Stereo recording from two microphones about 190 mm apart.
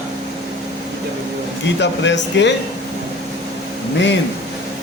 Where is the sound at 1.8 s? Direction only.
70° left (ahead or behind).